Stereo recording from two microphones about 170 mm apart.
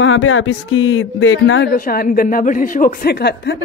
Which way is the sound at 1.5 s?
60° left (ahead or behind).